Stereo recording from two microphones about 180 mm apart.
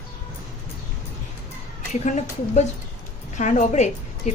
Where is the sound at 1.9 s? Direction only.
40° left (ahead or behind).